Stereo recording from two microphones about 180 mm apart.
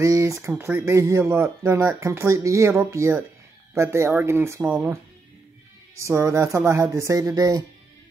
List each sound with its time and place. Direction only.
0.0 s speech: 15° right (ahead or behind)
5.9 s speech: 15° right (ahead or behind)